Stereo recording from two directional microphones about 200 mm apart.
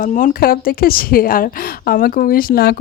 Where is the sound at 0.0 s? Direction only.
40° left (ahead or behind).